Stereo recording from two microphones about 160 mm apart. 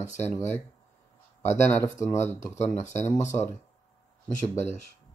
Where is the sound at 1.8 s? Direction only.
15° left (ahead or behind).